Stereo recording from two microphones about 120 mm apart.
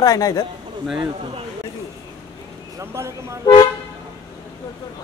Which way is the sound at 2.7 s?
25° right (ahead or behind).